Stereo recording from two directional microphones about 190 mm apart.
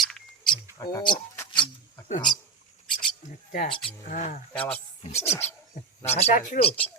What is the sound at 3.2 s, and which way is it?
Speech, 45° left (ahead or behind).